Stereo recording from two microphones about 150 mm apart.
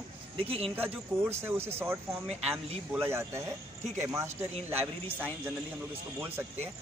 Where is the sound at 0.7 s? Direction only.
15° right (ahead or behind).